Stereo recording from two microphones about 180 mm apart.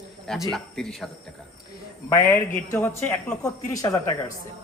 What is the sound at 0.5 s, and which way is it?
Speech, centre (ahead or behind).